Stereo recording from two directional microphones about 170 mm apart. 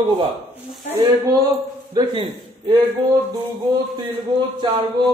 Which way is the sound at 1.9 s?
25° right (ahead or behind).